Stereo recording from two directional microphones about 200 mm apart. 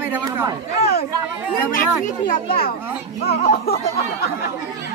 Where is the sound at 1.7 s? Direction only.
40° left (ahead or behind).